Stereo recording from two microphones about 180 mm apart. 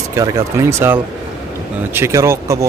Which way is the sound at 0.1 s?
15° right (ahead or behind).